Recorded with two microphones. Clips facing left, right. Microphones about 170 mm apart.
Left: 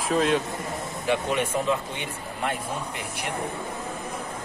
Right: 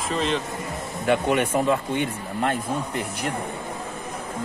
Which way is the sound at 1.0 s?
60° right (ahead or behind).